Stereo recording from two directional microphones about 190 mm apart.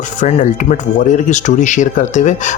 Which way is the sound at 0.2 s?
40° left (ahead or behind).